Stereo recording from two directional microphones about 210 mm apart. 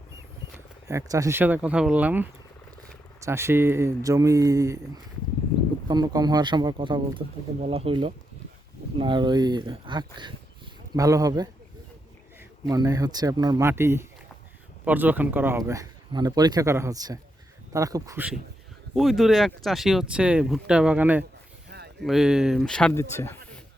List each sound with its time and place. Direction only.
0.9 s speech: 15° right (ahead or behind)
5.9 s speech: 20° right (ahead or behind)
12.6 s speech: 15° right (ahead or behind)
18.9 s speech: centre (ahead or behind)
21.7 s a sound: 50° right (ahead or behind)
22.0 s speech: centre (ahead or behind)